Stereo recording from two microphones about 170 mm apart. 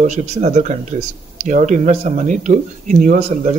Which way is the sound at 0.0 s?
45° right (ahead or behind).